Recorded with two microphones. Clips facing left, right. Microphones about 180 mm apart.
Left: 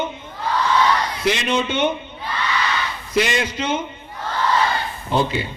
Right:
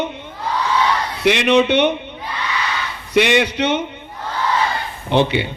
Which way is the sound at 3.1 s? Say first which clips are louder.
Right 5 dB; 70° right (ahead or behind).